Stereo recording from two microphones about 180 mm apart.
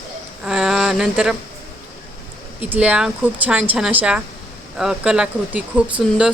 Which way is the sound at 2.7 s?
5° right (ahead or behind).